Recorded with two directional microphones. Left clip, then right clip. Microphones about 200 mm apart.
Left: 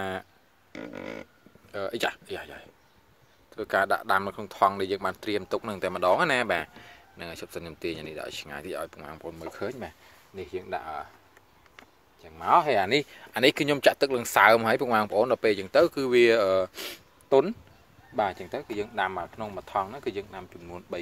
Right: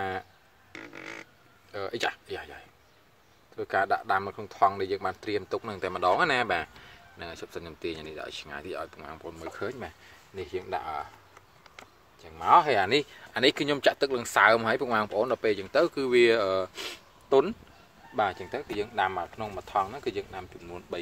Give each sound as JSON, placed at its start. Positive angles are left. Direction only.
{"t": 0.7, "sound": "a sound", "side_deg": 0}
{"t": 1.7, "sound": "speech", "side_deg": 35}
{"t": 12.2, "sound": "speech", "side_deg": 20}